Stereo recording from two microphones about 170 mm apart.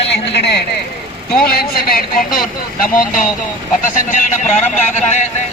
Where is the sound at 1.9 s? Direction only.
55° left (ahead or behind).